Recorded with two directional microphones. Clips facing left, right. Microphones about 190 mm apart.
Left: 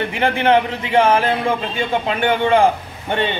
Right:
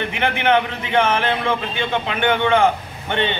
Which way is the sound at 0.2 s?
35° left (ahead or behind).